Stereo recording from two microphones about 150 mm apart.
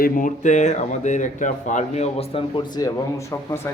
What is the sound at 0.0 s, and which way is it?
Speech, 60° left (ahead or behind).